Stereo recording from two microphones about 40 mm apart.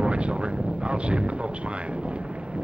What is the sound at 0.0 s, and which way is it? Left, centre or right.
Artillery fire, right.